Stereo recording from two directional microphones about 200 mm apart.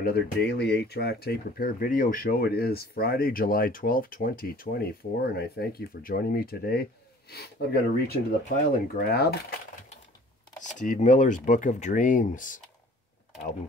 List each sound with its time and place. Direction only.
0.0 s speech: 55° left (ahead or behind)
10.7 s speech: 40° left (ahead or behind)